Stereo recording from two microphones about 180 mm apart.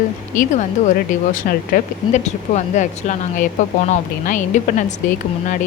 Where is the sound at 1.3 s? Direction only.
50° left (ahead or behind).